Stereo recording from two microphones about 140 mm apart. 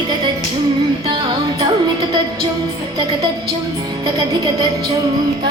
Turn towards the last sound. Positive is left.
turn(degrees=-35)  # may be behind; listen again after turning